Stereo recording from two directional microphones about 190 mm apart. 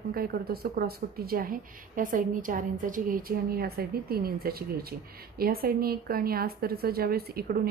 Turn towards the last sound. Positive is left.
turn(degrees=-55)  # may be behind; listen again after turning